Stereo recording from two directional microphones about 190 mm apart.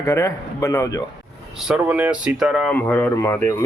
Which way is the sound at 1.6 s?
5° right (ahead or behind).